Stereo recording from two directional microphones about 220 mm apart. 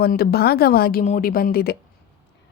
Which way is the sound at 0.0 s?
45° left (ahead or behind).